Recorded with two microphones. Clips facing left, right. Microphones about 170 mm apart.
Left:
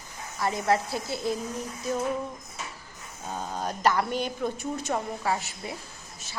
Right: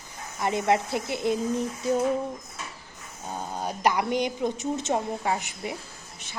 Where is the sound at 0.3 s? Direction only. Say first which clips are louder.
Right 2 dB; 20° right (ahead or behind).